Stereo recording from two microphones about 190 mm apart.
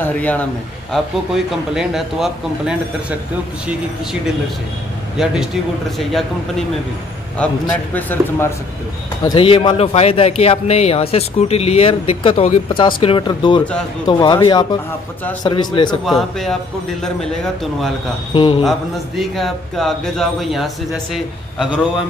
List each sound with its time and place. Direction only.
0.0 s a man's voice: 10° left (ahead or behind)
0.9 s speech: centre (ahead or behind)
5.1 s speech: 5° right (ahead or behind)
7.3 s a man's voice: 5° left (ahead or behind)
9.2 s a man's voice: 25° left (ahead or behind)
16.1 s speech: centre (ahead or behind)
18.3 s a man's voice: 25° left (ahead or behind)
18.6 s speech: centre (ahead or behind)